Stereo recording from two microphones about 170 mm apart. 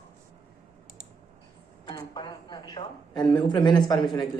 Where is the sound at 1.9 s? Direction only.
25° left (ahead or behind).